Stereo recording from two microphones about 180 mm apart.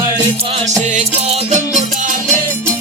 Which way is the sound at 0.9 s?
40° right (ahead or behind).